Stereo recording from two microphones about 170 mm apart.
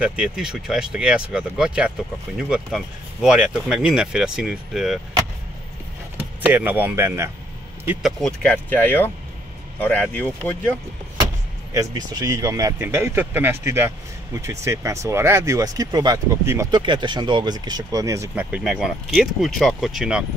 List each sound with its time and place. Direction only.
0.0 s speech: 5° right (ahead or behind)
6.1 s speech: 10° right (ahead or behind)
8.2 s speech: 5° left (ahead or behind)
11.7 s speech: 25° right (ahead or behind); by 20.2 s 5° right (ahead or behind)